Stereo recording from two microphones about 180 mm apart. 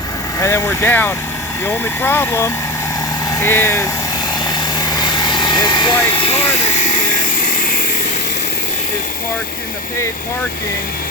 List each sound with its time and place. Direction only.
0.3 s speech: 15° left (ahead or behind)
4.8 s vehicle: 20° left (ahead or behind)
6.1 s speech: 35° left (ahead or behind)